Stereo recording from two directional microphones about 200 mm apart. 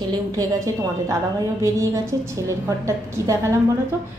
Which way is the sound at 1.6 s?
15° right (ahead or behind).